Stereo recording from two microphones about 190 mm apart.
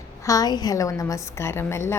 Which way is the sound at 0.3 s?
20° left (ahead or behind).